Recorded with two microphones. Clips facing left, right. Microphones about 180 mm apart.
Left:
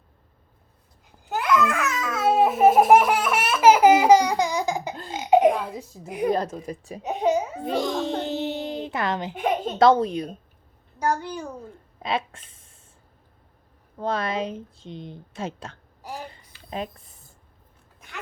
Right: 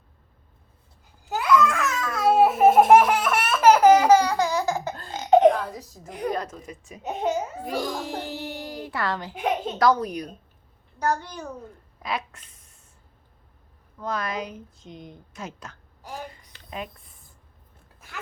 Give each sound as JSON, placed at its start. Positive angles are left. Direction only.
{"t": 1.4, "sound": "babbling", "side_deg": 0}
{"t": 6.3, "sound": "speech", "side_deg": 30}
{"t": 7.1, "sound": "a child's voice", "side_deg": 0}
{"t": 7.6, "sound": "a child's voice", "side_deg": 25}
{"t": 11.0, "sound": "a woman's voice", "side_deg": 10}
{"t": 12.0, "sound": "a sound", "side_deg": 25}
{"t": 14.0, "sound": "speech", "side_deg": 30}
{"t": 16.3, "sound": "a sound", "side_deg": 30}